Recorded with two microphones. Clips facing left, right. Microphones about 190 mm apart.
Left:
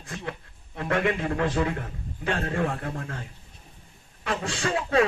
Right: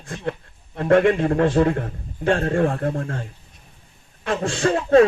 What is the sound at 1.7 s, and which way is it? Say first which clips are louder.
A man's voice: right 7 dB; 50° right (ahead or behind).